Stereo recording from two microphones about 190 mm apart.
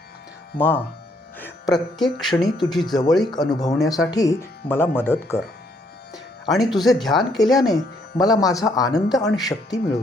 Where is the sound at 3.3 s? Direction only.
20° left (ahead or behind).